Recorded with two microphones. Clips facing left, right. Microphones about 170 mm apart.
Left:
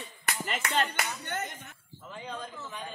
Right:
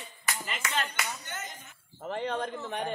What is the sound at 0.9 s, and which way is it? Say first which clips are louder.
Clapping: left 3 dB; 55° left (ahead or behind).